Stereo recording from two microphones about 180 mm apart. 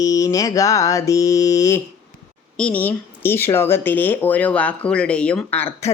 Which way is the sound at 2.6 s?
5° left (ahead or behind).